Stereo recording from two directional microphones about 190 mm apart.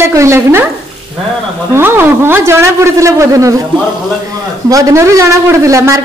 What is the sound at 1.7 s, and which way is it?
Speech, 10° right (ahead or behind).